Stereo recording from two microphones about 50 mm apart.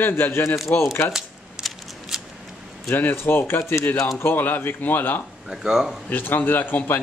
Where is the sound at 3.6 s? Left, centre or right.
Left.